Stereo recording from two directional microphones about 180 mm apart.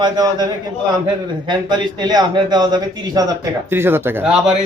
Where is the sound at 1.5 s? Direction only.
25° right (ahead or behind).